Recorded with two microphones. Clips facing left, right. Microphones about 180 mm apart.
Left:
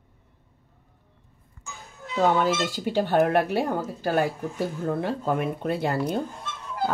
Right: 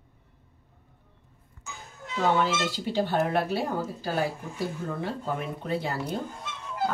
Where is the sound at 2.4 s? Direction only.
50° left (ahead or behind).